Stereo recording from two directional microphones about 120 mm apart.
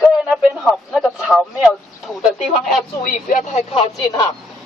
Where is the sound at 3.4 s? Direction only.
70° left (ahead or behind).